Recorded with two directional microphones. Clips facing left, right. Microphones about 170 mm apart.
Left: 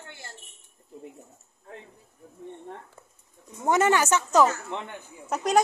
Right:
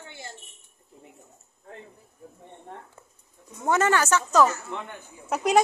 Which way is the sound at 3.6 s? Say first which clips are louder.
Left 1 dB; 15° left (ahead or behind).